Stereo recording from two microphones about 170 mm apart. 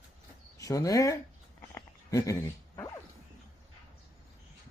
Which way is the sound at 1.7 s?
20° left (ahead or behind).